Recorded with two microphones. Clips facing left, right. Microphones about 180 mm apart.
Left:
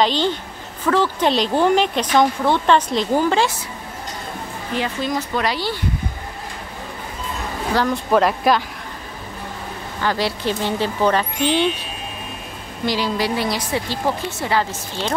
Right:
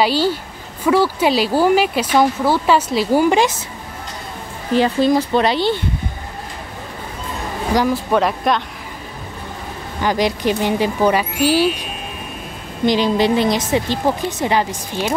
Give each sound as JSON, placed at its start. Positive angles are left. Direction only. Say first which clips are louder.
{"t": 0.0, "sound": "speech", "louder": "right 2 dB", "side_deg": -10}
{"t": 4.7, "sound": "a woman's voice", "louder": "right 9 dB", "side_deg": -35}
{"t": 7.7, "sound": "speech", "louder": "right 3 dB", "side_deg": -10}
{"t": 8.1, "sound": "speech", "louder": "left 1 dB", "side_deg": 0}
{"t": 9.9, "sound": "speech", "louder": "right 4 dB", "side_deg": -15}
{"t": 12.8, "sound": "a woman's voice", "louder": "right 6 dB", "side_deg": -20}